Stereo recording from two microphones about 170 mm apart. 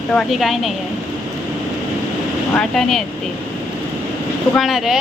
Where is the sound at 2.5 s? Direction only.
Centre (ahead or behind).